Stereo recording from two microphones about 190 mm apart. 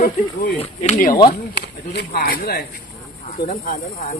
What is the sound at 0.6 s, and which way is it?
Speech, 35° left (ahead or behind).